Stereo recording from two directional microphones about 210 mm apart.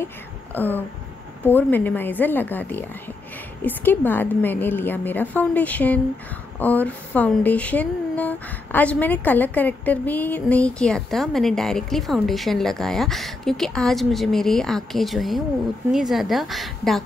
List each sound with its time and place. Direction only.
0.6 s a woman's voice: 10° left (ahead or behind)